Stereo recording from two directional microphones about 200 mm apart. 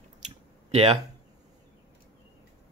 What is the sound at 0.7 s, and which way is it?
Speech, 30° right (ahead or behind).